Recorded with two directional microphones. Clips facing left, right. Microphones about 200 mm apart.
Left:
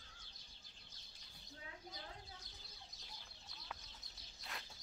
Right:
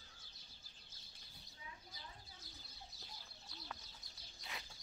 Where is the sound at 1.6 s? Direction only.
70° left (ahead or behind).